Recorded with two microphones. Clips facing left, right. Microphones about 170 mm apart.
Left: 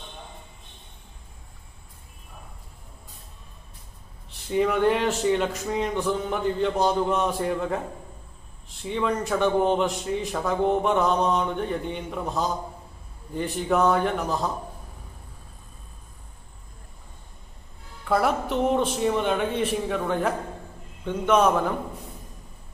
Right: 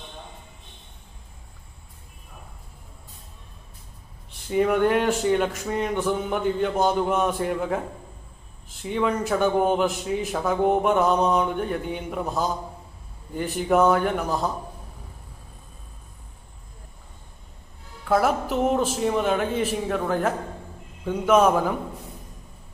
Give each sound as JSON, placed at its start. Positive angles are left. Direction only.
{"t": 4.5, "sound": "a man's voice", "side_deg": 0}
{"t": 18.0, "sound": "a man's voice", "side_deg": 0}